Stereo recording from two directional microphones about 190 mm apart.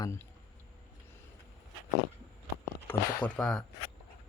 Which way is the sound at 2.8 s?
10° left (ahead or behind).